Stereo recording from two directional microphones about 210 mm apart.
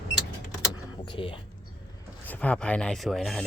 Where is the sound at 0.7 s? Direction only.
20° left (ahead or behind).